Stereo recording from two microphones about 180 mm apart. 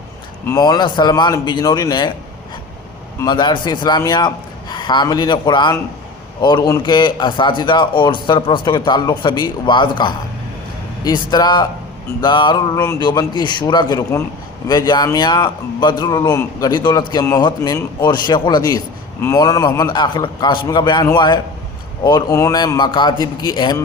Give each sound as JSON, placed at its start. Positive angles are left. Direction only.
{"t": 0.4, "sound": "speech", "side_deg": 20}
{"t": 3.2, "sound": "speech", "side_deg": 25}